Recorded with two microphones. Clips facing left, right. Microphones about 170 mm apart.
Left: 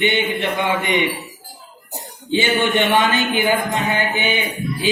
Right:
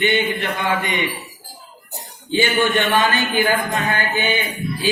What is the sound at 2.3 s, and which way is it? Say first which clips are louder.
Speech: even; 20° left (ahead or behind).